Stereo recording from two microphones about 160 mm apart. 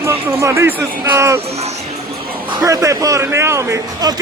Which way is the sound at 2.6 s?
20° right (ahead or behind).